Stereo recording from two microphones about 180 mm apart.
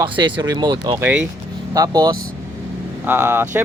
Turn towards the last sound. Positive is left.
turn(degrees=-10)  # may be behind; listen again after turning